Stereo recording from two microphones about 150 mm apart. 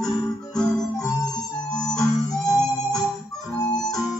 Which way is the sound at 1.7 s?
25° left (ahead or behind).